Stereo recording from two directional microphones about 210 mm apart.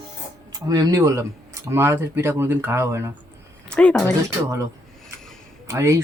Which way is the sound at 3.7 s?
5° left (ahead or behind).